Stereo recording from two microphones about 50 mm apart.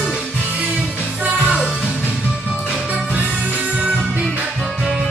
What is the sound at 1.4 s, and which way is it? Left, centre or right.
Music, right.